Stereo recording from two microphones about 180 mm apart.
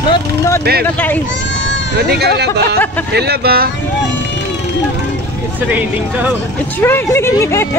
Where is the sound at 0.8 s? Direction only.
10° left (ahead or behind).